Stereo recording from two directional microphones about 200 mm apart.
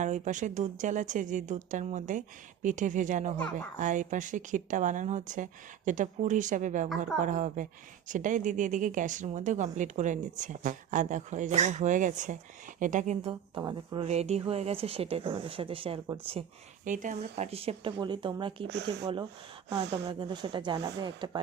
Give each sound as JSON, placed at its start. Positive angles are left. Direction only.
{"t": 0.0, "sound": "speech", "side_deg": -40}
{"t": 13.6, "sound": "speech", "side_deg": -20}
{"t": 16.8, "sound": "speech", "side_deg": -40}
{"t": 18.7, "sound": "speech", "side_deg": -55}
{"t": 19.8, "sound": "speech", "side_deg": -25}